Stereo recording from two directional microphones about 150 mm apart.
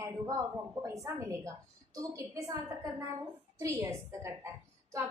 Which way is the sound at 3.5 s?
20° right (ahead or behind).